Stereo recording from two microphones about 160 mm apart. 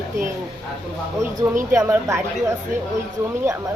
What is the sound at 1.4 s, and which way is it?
Speech, 15° right (ahead or behind).